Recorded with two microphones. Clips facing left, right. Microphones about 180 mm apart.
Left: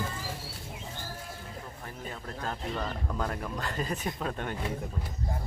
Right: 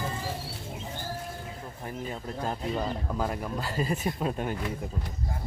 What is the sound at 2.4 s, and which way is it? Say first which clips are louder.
Speech: right 4 dB; 15° right (ahead or behind).